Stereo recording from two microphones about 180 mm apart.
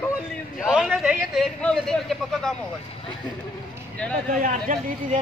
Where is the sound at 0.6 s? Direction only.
Centre (ahead or behind).